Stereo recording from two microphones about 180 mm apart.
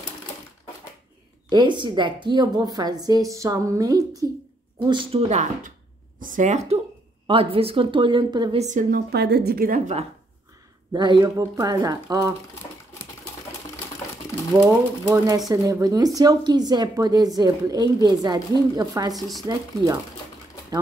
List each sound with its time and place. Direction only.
1.5 s a woman's voice: 25° right (ahead or behind)
5.3 s a woman's voice: 40° right (ahead or behind)
7.2 s a woman's voice: 30° right (ahead or behind)
8.5 s a woman's voice: 45° right (ahead or behind)
9.1 s a woman's voice: 65° right (ahead or behind); by 10.0 s 45° right (ahead or behind)
10.9 s a woman's voice: 25° right (ahead or behind)
15.0 s a woman's voice: 20° right (ahead or behind)
19.1 s speech: centre (ahead or behind)
19.4 s a woman's voice: 20° right (ahead or behind)